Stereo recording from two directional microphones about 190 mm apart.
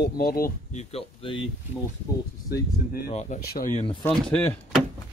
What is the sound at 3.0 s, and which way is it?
Speech, 45° left (ahead or behind).